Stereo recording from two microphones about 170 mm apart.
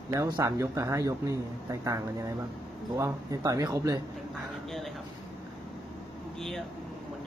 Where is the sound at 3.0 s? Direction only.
20° right (ahead or behind).